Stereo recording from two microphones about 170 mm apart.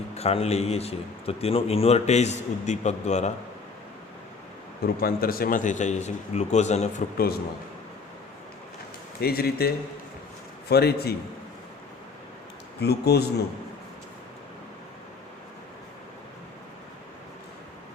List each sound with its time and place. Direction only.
0.1 s a man's voice: 35° left (ahead or behind)
4.8 s a man's voice: 60° left (ahead or behind); by 6.9 s 40° left (ahead or behind)
9.2 s a man's voice: 65° left (ahead or behind)
12.8 s a man's voice: 70° left (ahead or behind)